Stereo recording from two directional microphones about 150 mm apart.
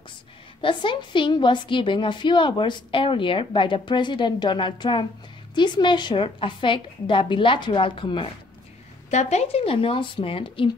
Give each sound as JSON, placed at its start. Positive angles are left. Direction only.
{"t": 0.6, "sound": "a woman's voice", "side_deg": 35}
{"t": 9.1, "sound": "a woman's voice", "side_deg": 50}